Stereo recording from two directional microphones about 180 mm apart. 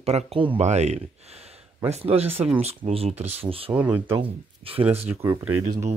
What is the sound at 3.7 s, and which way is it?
Speech, 10° right (ahead or behind).